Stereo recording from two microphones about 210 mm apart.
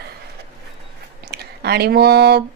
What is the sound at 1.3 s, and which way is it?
Speech, 50° right (ahead or behind).